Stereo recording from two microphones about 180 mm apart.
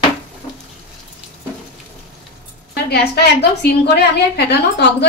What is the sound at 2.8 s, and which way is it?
A woman's voice, 65° left (ahead or behind).